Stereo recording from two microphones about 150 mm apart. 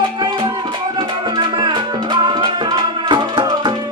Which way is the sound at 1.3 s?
30° right (ahead or behind).